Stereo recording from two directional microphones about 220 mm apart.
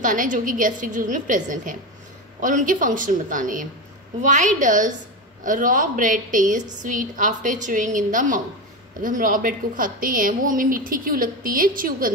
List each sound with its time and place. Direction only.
0.0 s a woman's voice: 35° right (ahead or behind)